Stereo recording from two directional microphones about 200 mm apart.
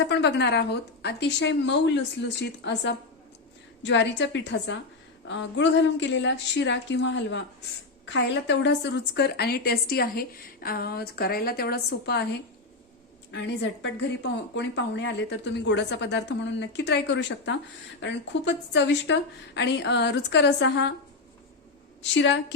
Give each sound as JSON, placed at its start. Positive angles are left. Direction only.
{"t": 0.1, "sound": "a woman's voice", "side_deg": 60}
{"t": 13.3, "sound": "a woman's voice", "side_deg": 60}
{"t": 22.1, "sound": "a woman's voice", "side_deg": 65}